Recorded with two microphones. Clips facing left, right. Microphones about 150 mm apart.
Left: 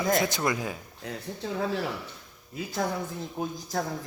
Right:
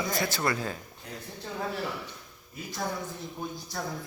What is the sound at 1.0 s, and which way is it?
Speech, 90° left.